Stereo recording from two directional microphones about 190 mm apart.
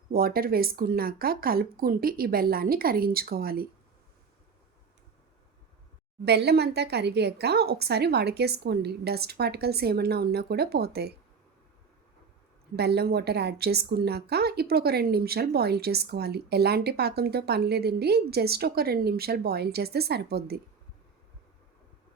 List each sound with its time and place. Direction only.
0.1 s speech: 50° right (ahead or behind)
6.2 s a woman's voice: 60° right (ahead or behind)
12.7 s a woman's voice: 60° right (ahead or behind)